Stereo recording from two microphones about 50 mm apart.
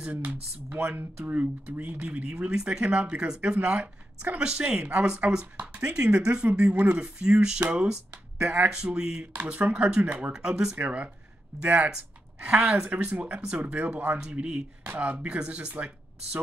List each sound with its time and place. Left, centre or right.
0.1 s speech: right
1.3 s speech: right
2.5 s speech: centre
2.8 s speech: right
6.7 s speech: right
7.0 s speech: centre
8.6 s speech: centre
10.3 s speech: centre
10.8 s speech: right
11.9 s a woman's voice: right
14.2 s speech: centre